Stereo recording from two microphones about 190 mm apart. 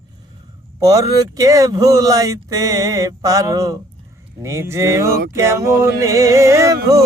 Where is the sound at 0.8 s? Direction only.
15° right (ahead or behind).